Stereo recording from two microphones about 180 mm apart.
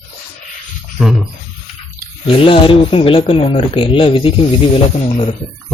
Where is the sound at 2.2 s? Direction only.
30° left (ahead or behind).